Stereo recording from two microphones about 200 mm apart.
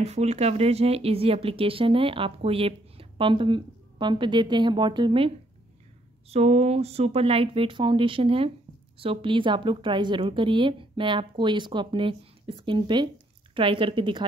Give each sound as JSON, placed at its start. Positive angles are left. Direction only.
{"t": 0.0, "sound": "speech", "side_deg": -35}